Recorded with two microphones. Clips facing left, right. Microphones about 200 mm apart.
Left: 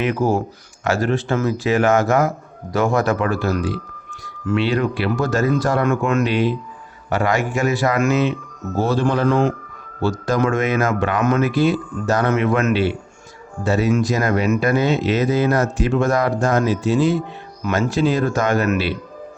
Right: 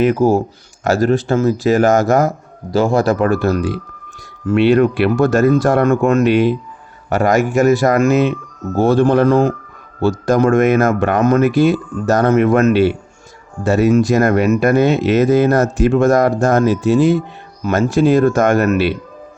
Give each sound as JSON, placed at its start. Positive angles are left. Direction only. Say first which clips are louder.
{"t": 0.0, "sound": "speech", "louder": "right 6 dB", "side_deg": -40}
{"t": 3.2, "sound": "speech", "louder": "right 6 dB", "side_deg": -55}
{"t": 4.5, "sound": "speech", "louder": "right 8 dB", "side_deg": -55}
{"t": 5.8, "sound": "speech", "louder": "right 5 dB", "side_deg": -40}
{"t": 6.2, "sound": "speech", "louder": "right 6 dB", "side_deg": -50}
{"t": 8.1, "sound": "speech", "louder": "right 4 dB", "side_deg": -50}
{"t": 17.6, "sound": "speech", "louder": "right 5 dB", "side_deg": -40}
{"t": 18.0, "sound": "speech", "louder": "right 8 dB", "side_deg": -50}